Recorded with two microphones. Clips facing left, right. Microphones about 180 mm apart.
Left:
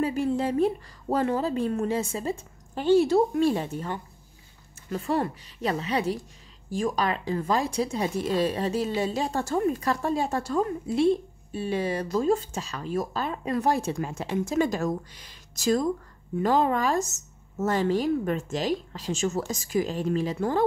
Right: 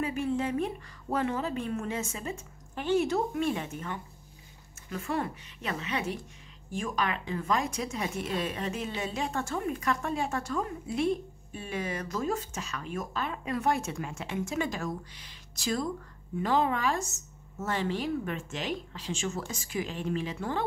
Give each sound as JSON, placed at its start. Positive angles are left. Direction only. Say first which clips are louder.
{"t": 0.0, "sound": "speech", "louder": "left 5 dB", "side_deg": 35}